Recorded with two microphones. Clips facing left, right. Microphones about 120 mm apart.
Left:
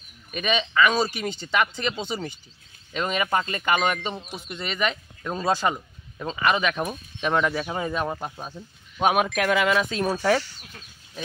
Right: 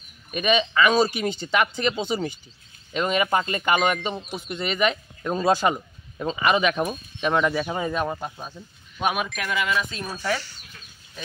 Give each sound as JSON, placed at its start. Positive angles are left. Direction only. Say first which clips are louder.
{"t": 0.3, "sound": "speech", "louder": "right 4 dB", "side_deg": -15}
{"t": 8.2, "sound": "speech", "louder": "even", "side_deg": 10}
{"t": 9.3, "sound": "speech", "louder": "left 5 dB", "side_deg": 85}